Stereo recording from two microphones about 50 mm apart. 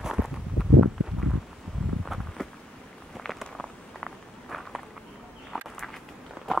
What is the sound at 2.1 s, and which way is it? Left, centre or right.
Walk, centre.